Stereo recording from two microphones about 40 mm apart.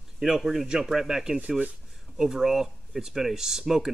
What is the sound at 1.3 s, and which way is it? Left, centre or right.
Speech, right.